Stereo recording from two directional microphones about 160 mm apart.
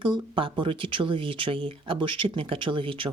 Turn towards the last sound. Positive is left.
turn(degrees=-35)  # may be behind; listen again after turning